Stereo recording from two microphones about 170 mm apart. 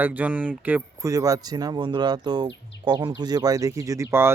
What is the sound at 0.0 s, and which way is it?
Speech, 10° right (ahead or behind).